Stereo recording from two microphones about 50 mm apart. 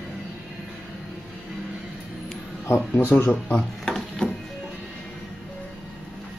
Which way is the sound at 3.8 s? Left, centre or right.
Centre.